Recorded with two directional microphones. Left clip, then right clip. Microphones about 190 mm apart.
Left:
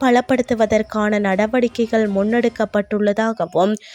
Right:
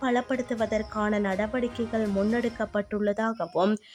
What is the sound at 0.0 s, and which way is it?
A woman's voice, 35° left (ahead or behind).